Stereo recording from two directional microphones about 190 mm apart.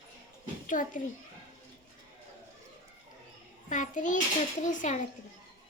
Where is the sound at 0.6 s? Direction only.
45° left (ahead or behind).